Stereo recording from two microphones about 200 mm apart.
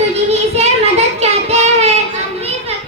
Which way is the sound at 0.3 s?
30° right (ahead or behind).